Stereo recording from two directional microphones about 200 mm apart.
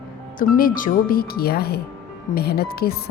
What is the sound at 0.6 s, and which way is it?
Speech, 45° left (ahead or behind).